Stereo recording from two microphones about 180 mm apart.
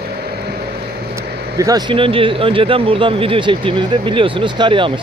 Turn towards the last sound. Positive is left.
turn(degrees=-25)  # may be behind; listen again after turning